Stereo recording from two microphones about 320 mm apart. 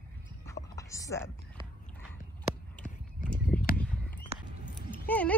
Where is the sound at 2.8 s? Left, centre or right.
Centre.